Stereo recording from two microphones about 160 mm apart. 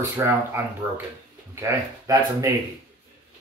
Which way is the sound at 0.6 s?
10° right (ahead or behind).